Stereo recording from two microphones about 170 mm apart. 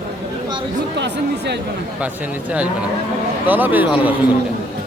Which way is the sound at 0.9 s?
90° right.